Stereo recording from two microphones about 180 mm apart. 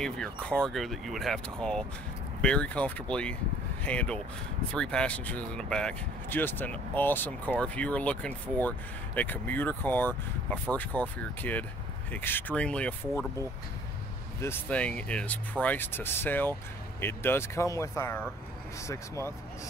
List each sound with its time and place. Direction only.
0.0 s speech: 5° left (ahead or behind)
14.4 s speech: 10° left (ahead or behind)